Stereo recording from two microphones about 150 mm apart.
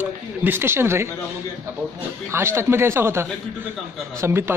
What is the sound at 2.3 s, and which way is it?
A man's voice, 15° right (ahead or behind).